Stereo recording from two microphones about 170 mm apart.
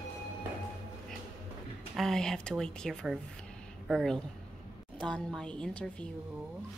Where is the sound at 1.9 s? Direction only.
Centre (ahead or behind).